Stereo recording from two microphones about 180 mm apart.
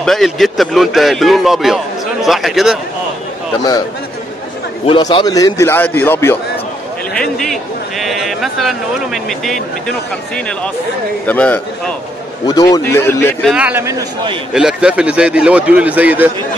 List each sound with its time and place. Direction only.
0.0 s speech: centre (ahead or behind)
4.8 s a man's voice: 25° left (ahead or behind)
7.2 s a sound: centre (ahead or behind)
8.0 s a man's voice: centre (ahead or behind)
12.4 s a man's voice: 20° left (ahead or behind)
13.5 s a man's voice: 5° right (ahead or behind)
14.5 s a man's voice: 5° right (ahead or behind)